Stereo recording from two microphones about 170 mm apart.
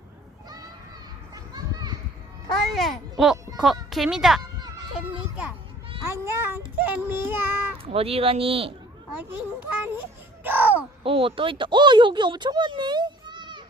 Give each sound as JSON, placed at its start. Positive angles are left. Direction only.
{"t": 1.5, "sound": "children playing", "side_deg": -25}
{"t": 2.6, "sound": "a sound", "side_deg": 0}
{"t": 3.6, "sound": "speech", "side_deg": 0}
{"t": 6.1, "sound": "a child's voice", "side_deg": -15}
{"t": 7.9, "sound": "speech", "side_deg": -35}
{"t": 9.1, "sound": "a child's voice", "side_deg": -10}
{"t": 10.4, "sound": "crow", "side_deg": -10}
{"t": 11.0, "sound": "speech", "side_deg": -30}